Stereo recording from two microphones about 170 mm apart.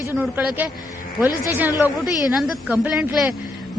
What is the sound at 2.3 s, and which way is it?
Speech, centre (ahead or behind).